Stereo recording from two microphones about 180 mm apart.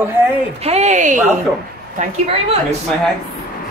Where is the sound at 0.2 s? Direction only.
10° right (ahead or behind).